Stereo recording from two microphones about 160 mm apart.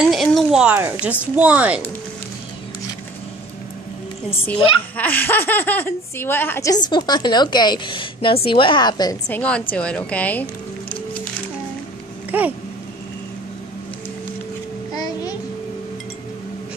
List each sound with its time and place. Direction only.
0.0 s speech: centre (ahead or behind)
4.6 s a woman's voice: 35° left (ahead or behind)
4.9 s speech: 10° left (ahead or behind)
9.3 s speech: 10° left (ahead or behind)
12.3 s a sound: 10° right (ahead or behind)
14.9 s a sound: 25° left (ahead or behind)